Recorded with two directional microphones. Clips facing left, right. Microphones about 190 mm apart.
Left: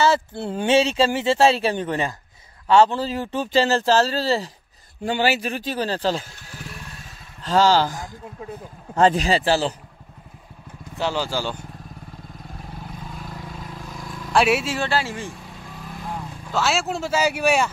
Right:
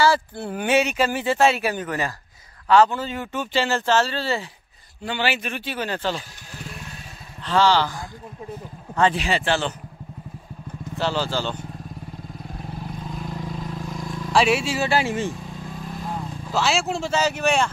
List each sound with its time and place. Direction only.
0.0 s speech: 25° left (ahead or behind)
7.4 s speech: 40° left (ahead or behind)
11.0 s speech: 15° left (ahead or behind)
13.1 s vehicle: centre (ahead or behind)
14.3 s speech: centre (ahead or behind)
14.9 s speech: 15° right (ahead or behind)
16.2 s speech: centre (ahead or behind)